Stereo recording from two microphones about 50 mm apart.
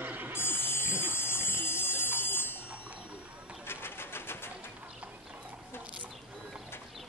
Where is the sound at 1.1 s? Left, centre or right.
Left.